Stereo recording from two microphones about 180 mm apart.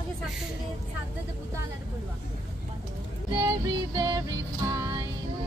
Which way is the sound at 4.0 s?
20° right (ahead or behind).